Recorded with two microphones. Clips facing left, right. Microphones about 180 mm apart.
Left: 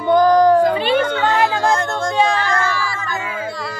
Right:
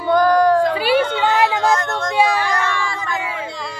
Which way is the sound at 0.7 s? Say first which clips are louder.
Even; 10° right (ahead or behind).